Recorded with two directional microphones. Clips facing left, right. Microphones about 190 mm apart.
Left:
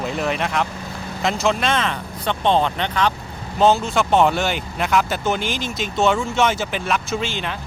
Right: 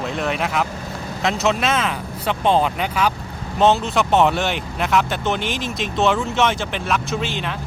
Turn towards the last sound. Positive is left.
turn(degrees=0)  # may be behind; listen again after turning